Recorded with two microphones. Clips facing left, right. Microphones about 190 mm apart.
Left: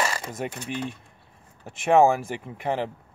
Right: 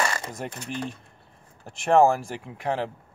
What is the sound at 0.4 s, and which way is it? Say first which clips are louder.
Speech: left 2 dB; centre (ahead or behind).